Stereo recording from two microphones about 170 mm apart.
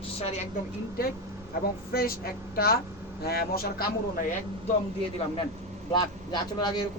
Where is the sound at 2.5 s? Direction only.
60° left (ahead or behind).